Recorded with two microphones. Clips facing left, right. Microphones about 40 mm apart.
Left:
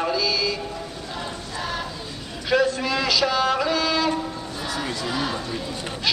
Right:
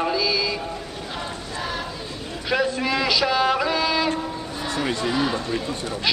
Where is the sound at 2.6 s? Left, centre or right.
Centre.